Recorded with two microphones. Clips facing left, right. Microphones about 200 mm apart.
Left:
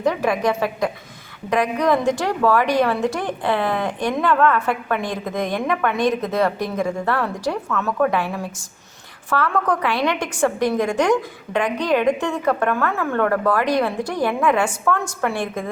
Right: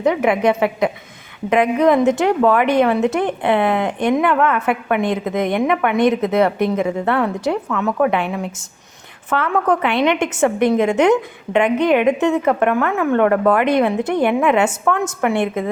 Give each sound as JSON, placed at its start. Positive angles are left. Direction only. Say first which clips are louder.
{"t": 0.0, "sound": "a woman's voice", "louder": "right 4 dB", "side_deg": -20}